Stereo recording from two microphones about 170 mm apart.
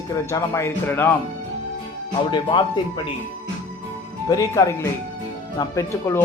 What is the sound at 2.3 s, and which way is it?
Speech, 25° left (ahead or behind).